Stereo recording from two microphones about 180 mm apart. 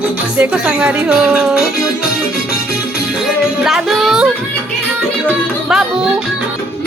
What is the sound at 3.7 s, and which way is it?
Speech, centre (ahead or behind).